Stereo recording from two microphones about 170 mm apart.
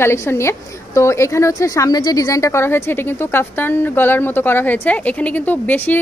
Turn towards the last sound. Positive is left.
turn(degrees=10)  # may be behind; listen again after turning